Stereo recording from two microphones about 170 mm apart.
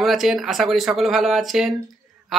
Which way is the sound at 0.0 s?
Centre (ahead or behind).